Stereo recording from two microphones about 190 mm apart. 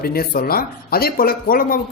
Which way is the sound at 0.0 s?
50° left (ahead or behind).